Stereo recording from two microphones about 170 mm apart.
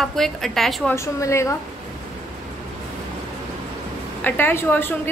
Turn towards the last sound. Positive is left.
turn(degrees=10)  # may be behind; listen again after turning